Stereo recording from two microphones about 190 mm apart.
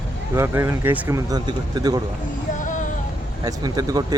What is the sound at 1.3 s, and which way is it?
Speech, 20° right (ahead or behind).